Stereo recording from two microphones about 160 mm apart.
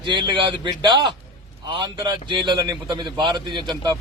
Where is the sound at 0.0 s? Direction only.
30° right (ahead or behind).